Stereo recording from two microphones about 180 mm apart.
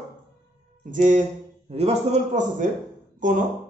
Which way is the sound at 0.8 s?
45° right (ahead or behind).